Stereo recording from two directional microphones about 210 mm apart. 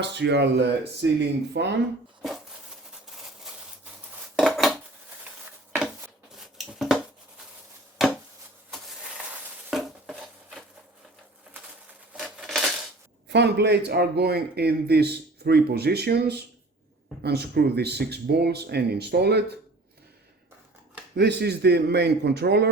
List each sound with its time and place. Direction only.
0.0 s speech: 55° right (ahead or behind)
4.1 s dishes: centre (ahead or behind)
5.3 s patter: 10° right (ahead or behind)
6.3 s a sound: centre (ahead or behind)
8.0 s chopping: centre (ahead or behind)
8.7 s a sound: 5° right (ahead or behind)
12.1 s coin: centre (ahead or behind)
13.2 s a man's voice: 55° right (ahead or behind)
21.2 s a man's voice: 50° right (ahead or behind)